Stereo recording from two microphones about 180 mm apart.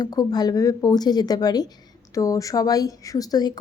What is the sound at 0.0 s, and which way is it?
Speech, 20° left (ahead or behind).